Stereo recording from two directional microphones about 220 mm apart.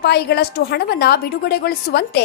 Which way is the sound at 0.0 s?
50° left (ahead or behind).